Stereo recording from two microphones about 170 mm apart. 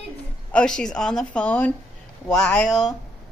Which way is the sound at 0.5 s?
5° left (ahead or behind).